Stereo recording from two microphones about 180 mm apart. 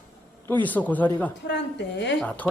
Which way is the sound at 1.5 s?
75° left (ahead or behind).